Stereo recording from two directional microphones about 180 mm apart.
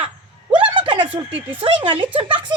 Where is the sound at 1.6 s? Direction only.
30° right (ahead or behind).